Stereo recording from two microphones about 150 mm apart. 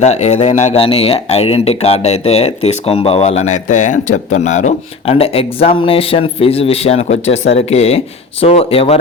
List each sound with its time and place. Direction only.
0.0 s speech: 50° left (ahead or behind)